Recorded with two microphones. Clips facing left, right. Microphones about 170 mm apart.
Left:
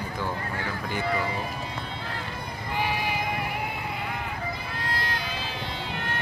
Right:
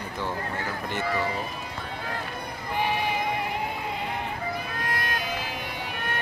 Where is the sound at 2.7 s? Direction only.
20° right (ahead or behind).